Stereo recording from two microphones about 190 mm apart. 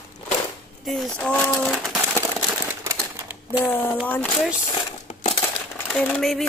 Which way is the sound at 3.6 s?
10° left (ahead or behind).